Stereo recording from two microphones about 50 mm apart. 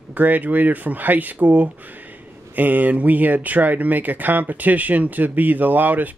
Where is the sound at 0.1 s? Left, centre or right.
Right.